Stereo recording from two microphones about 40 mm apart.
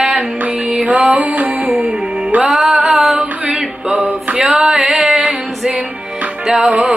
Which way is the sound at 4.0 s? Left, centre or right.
Right.